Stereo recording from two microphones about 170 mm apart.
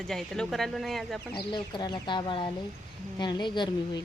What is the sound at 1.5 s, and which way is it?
Speech, 25° left (ahead or behind).